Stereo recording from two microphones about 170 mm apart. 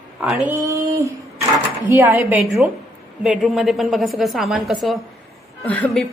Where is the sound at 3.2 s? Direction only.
Centre (ahead or behind).